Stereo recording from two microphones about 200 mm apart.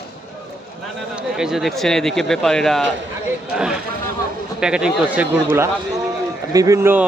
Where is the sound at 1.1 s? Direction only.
Centre (ahead or behind).